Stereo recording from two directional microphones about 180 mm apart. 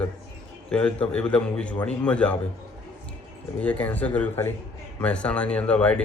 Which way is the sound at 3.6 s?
10° left (ahead or behind).